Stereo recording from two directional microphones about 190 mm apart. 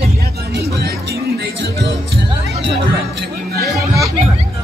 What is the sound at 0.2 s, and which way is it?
Music, 55° right (ahead or behind).